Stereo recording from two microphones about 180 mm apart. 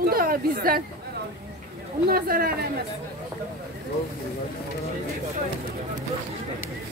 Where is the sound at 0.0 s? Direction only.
55° right (ahead or behind).